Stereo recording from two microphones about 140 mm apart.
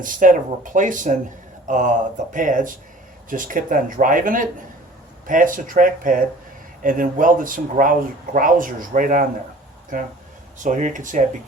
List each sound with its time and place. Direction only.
0.0 s speech: 70° right (ahead or behind)